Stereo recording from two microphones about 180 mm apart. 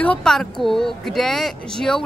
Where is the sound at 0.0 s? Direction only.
5° left (ahead or behind).